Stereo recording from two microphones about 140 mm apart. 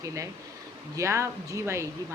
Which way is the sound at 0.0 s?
20° right (ahead or behind).